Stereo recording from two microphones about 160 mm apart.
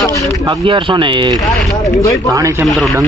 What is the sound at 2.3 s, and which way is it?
Speech, 20° right (ahead or behind).